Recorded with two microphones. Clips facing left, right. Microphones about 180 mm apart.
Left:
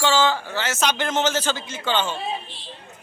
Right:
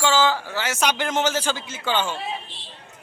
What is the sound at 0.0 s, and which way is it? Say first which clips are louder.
Speech: even; 5° right (ahead or behind).